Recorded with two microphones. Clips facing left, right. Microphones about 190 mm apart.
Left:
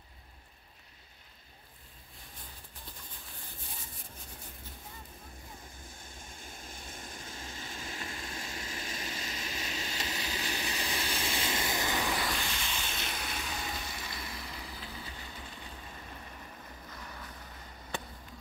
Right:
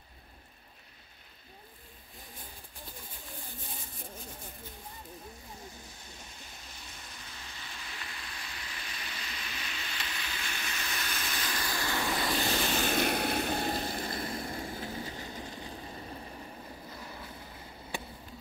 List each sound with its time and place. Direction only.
5.9 s waves: 50° left (ahead or behind); by 12.2 s 15° left (ahead or behind)
12.4 s vehicle: 40° right (ahead or behind)
12.7 s vehicle: 60° right (ahead or behind); by 17.5 s 25° right (ahead or behind)